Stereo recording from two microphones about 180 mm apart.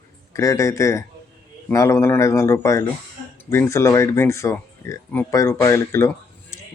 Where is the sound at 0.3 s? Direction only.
15° left (ahead or behind).